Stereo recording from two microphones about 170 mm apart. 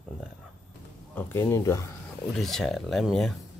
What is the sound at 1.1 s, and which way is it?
Speech, 15° left (ahead or behind).